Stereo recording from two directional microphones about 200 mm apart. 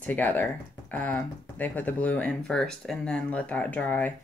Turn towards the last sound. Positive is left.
turn(degrees=10)  # may be behind; listen again after turning